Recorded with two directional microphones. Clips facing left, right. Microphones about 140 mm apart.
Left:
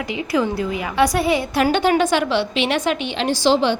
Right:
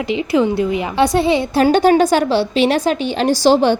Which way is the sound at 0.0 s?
25° right (ahead or behind).